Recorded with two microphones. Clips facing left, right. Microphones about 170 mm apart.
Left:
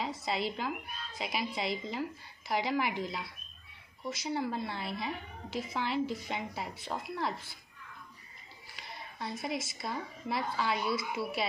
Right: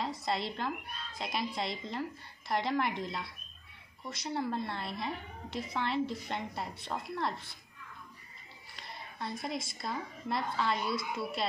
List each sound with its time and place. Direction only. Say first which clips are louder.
0.0 s a woman's voice: even; centre (ahead or behind)
8.7 s a woman's voice: even; centre (ahead or behind)